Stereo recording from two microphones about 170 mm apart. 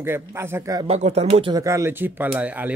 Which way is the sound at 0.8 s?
40° right (ahead or behind).